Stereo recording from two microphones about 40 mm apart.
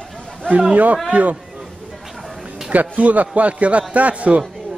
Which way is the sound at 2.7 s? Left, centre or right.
Right.